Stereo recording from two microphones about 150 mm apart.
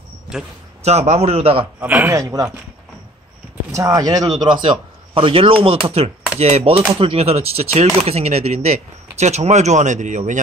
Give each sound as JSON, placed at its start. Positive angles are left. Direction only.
{"t": 0.8, "sound": "a man's voice", "side_deg": -45}
{"t": 1.8, "sound": "a man's voice", "side_deg": -10}
{"t": 2.1, "sound": "speech", "side_deg": -20}
{"t": 3.7, "sound": "a man's voice", "side_deg": -20}